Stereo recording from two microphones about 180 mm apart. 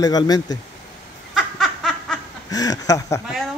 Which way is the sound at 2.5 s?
20° left (ahead or behind).